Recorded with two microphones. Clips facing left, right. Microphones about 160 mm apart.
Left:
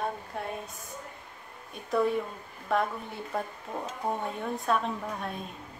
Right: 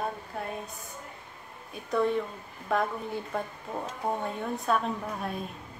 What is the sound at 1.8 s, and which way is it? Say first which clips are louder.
A woman's voice: even; centre (ahead or behind).